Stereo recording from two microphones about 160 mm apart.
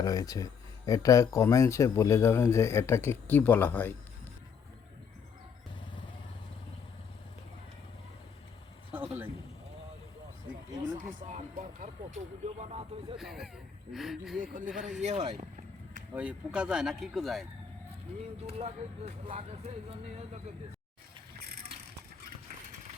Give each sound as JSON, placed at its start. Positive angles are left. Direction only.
{"t": 0.0, "sound": "speech", "side_deg": 20}
{"t": 8.9, "sound": "a sound", "side_deg": -10}
{"t": 10.9, "sound": "speech", "side_deg": -50}
{"t": 12.5, "sound": "speech", "side_deg": -40}
{"t": 13.1, "sound": "speech", "side_deg": 0}
{"t": 14.4, "sound": "speech", "side_deg": -55}
{"t": 14.7, "sound": "speech", "side_deg": -5}
{"t": 15.0, "sound": "speech", "side_deg": -40}
{"t": 16.1, "sound": "speech", "side_deg": -5}
{"t": 18.4, "sound": "speech", "side_deg": -40}